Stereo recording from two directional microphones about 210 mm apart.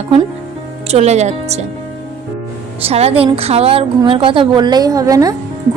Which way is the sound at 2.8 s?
30° right (ahead or behind).